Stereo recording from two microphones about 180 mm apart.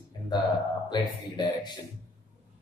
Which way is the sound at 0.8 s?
25° left (ahead or behind).